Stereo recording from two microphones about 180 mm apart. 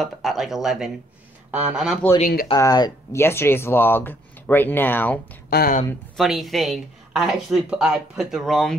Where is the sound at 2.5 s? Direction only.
20° left (ahead or behind).